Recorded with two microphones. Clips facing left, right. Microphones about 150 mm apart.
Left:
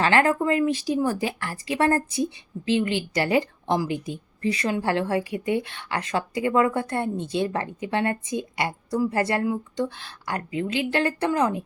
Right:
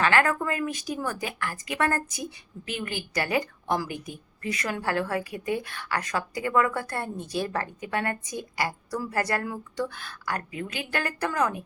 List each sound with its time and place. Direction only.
0.0 s a woman's voice: 30° left (ahead or behind)